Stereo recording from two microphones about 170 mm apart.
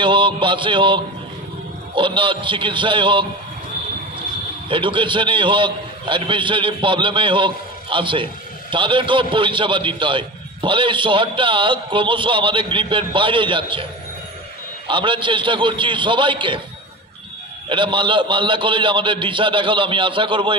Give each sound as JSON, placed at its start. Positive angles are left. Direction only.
{"t": 0.0, "sound": "a man's voice", "side_deg": -30}
{"t": 4.6, "sound": "a man's voice", "side_deg": -30}
{"t": 14.9, "sound": "a man's voice", "side_deg": -30}
{"t": 17.6, "sound": "a man's voice", "side_deg": -30}